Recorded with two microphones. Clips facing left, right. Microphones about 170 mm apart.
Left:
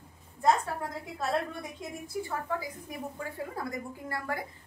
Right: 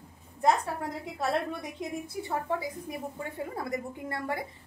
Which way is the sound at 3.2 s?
25° right (ahead or behind).